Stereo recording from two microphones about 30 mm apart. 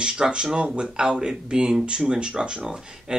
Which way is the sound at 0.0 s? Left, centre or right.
Right.